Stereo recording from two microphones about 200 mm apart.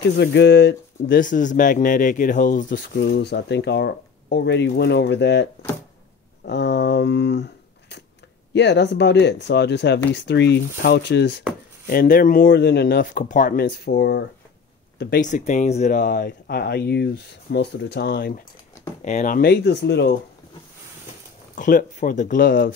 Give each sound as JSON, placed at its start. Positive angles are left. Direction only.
{"t": 0.2, "sound": "speech", "side_deg": 60}
{"t": 8.5, "sound": "speech", "side_deg": 60}
{"t": 11.9, "sound": "speech", "side_deg": 45}
{"t": 15.0, "sound": "speech", "side_deg": 45}
{"t": 19.0, "sound": "speech", "side_deg": 40}
{"t": 21.5, "sound": "speech", "side_deg": 40}